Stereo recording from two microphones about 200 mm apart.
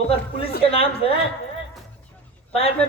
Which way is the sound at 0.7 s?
30° left (ahead or behind).